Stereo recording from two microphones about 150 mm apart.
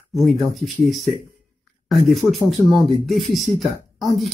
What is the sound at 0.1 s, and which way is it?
Speech, centre (ahead or behind).